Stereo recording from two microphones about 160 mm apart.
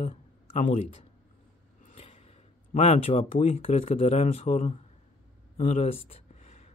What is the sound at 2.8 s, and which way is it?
Speech, 40° left (ahead or behind).